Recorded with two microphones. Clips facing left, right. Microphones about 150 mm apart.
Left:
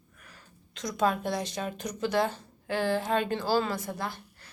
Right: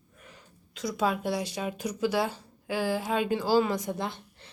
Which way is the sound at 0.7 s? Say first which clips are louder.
Left 1 dB; 5° right (ahead or behind).